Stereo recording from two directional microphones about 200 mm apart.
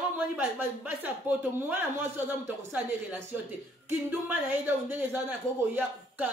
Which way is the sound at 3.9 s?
10° right (ahead or behind).